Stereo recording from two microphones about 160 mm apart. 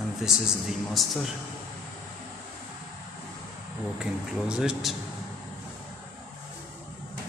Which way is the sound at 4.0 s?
5° right (ahead or behind).